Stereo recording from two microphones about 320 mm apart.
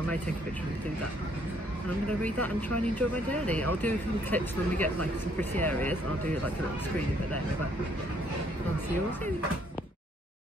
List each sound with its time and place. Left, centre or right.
2.7 s speech: right
3.3 s speech: centre